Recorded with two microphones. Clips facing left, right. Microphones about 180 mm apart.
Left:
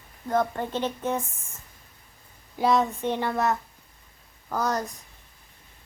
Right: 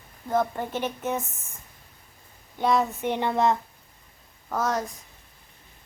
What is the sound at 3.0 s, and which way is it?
Speech, 15° right (ahead or behind).